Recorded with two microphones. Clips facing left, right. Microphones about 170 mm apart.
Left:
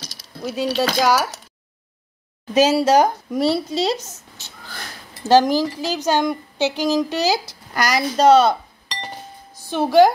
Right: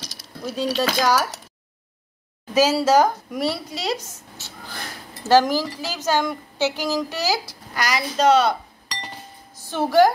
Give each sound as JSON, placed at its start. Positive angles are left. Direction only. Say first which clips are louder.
{"t": 0.4, "sound": "speech", "louder": "left 2 dB", "side_deg": 5}
{"t": 2.5, "sound": "a woman's voice", "louder": "left 2 dB", "side_deg": 20}
{"t": 3.3, "sound": "a woman's voice", "louder": "left 6 dB", "side_deg": 30}
{"t": 7.7, "sound": "a woman's voice", "louder": "left 4 dB", "side_deg": 40}
{"t": 9.7, "sound": "speech", "louder": "left 3 dB", "side_deg": 15}